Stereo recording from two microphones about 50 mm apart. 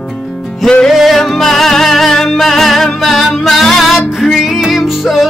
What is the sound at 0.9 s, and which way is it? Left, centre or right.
Music, centre.